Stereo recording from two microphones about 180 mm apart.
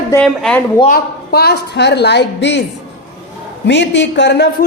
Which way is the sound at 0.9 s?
60° left (ahead or behind).